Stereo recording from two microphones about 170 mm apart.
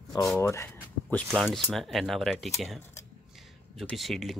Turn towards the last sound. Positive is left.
turn(degrees=0)  # may be behind; listen again after turning